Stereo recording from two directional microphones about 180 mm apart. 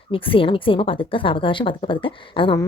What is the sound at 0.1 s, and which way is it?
A woman's voice, 30° left (ahead or behind).